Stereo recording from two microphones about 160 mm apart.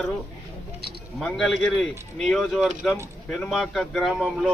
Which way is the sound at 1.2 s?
Centre (ahead or behind).